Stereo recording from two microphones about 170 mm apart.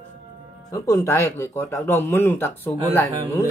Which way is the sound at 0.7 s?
20° left (ahead or behind).